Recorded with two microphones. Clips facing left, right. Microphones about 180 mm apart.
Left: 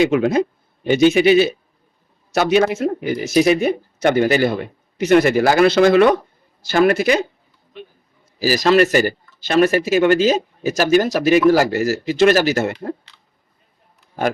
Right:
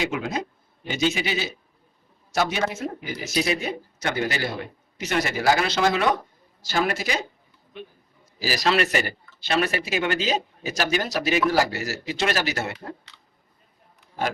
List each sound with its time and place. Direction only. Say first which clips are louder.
0.0 s speech: left 12 dB; 60° left (ahead or behind)
8.4 s speech: left 9 dB; 45° left (ahead or behind)